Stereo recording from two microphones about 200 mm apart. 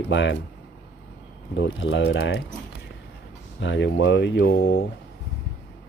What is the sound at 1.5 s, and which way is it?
Speech, 65° left (ahead or behind).